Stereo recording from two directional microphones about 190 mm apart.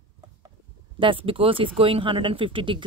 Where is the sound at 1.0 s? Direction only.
25° right (ahead or behind).